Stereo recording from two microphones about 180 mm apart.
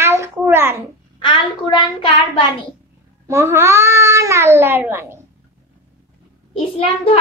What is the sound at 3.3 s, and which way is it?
Speech, 15° right (ahead or behind).